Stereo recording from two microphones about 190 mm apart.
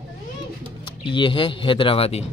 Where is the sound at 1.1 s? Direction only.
25° left (ahead or behind).